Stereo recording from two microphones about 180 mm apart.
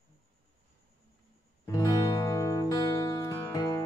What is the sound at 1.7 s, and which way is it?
Music, 20° left (ahead or behind).